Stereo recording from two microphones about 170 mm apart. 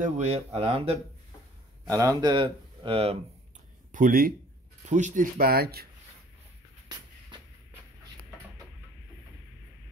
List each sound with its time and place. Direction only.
0.0 s speech: 40° right (ahead or behind)
1.9 s speech: 20° right (ahead or behind); by 3.2 s 35° right (ahead or behind)
3.9 s speech: 55° right (ahead or behind)
6.9 s a sound: 25° right (ahead or behind)